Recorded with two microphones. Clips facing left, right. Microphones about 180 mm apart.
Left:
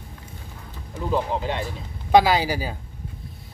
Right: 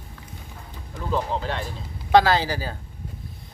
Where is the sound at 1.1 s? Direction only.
15° left (ahead or behind).